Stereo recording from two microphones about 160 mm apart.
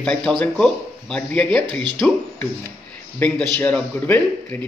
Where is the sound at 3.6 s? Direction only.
10° left (ahead or behind).